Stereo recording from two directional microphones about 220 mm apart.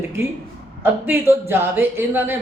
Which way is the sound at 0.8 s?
10° right (ahead or behind).